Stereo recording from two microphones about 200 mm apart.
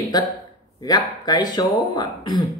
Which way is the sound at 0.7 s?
20° left (ahead or behind).